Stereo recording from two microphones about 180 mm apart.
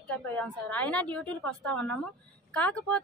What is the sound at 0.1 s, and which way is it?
A woman's voice, 10° left (ahead or behind).